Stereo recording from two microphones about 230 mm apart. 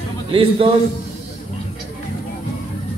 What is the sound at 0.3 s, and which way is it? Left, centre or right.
Speech, right.